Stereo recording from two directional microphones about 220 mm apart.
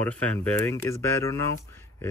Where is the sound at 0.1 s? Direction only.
10° left (ahead or behind).